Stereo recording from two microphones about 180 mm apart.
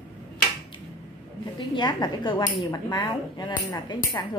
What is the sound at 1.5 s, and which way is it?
Speech, 25° left (ahead or behind).